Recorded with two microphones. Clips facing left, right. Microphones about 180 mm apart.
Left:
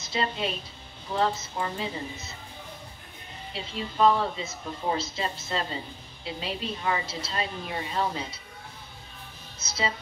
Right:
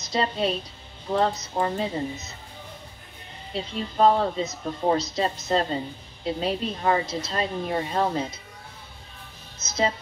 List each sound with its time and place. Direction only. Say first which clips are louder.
0.0 s a woman's voice: right 5 dB; 40° right (ahead or behind)
3.5 s speech: right 4 dB; 40° right (ahead or behind)
9.7 s music: right 5 dB; 45° right (ahead or behind)